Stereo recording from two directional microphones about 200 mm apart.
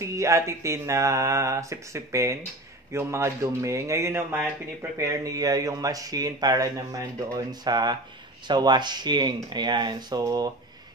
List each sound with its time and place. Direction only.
0.0 s speech: 15° right (ahead or behind)